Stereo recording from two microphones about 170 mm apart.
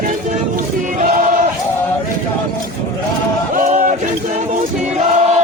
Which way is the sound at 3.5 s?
50° right (ahead or behind).